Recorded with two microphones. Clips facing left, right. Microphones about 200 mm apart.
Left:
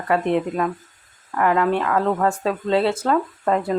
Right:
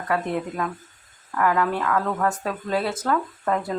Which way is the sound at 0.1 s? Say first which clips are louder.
Left 6 dB; 25° left (ahead or behind).